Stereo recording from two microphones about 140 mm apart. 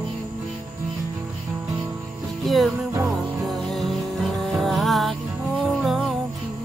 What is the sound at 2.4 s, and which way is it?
Music, centre (ahead or behind).